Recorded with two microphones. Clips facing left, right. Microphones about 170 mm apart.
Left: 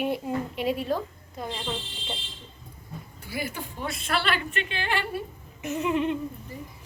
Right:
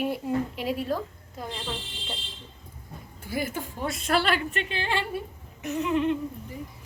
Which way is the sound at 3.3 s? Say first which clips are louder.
Right 3 dB; 45° right (ahead or behind).